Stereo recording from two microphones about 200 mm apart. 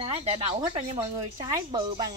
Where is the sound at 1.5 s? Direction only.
20° right (ahead or behind).